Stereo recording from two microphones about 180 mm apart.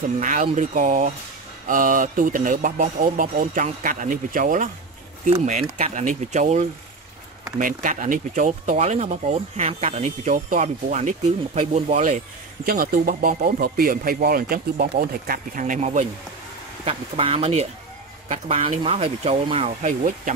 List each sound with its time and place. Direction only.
0.2 s speech: 45° right (ahead or behind)
16.8 s speech: 30° right (ahead or behind)